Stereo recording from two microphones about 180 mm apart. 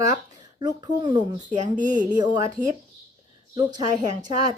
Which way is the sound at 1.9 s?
5° right (ahead or behind).